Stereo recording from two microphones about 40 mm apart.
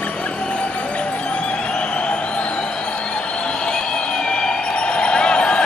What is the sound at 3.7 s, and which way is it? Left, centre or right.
Vehicle, left.